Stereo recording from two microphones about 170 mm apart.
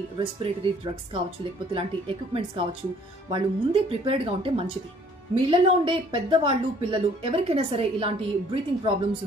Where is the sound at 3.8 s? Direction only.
35° right (ahead or behind).